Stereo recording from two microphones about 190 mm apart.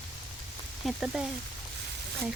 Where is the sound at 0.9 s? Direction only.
Centre (ahead or behind).